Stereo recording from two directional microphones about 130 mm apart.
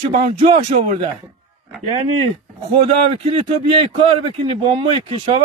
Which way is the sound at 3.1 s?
50° right (ahead or behind).